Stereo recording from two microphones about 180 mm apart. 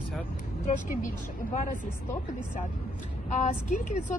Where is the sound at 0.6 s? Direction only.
45° left (ahead or behind).